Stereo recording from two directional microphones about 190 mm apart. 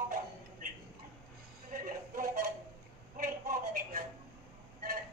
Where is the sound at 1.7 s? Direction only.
45° right (ahead or behind).